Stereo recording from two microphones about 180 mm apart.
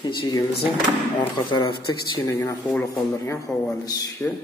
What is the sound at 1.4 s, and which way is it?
A man's voice, 25° left (ahead or behind).